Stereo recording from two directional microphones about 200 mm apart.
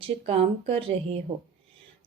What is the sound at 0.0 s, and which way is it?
A woman's voice, 30° right (ahead or behind).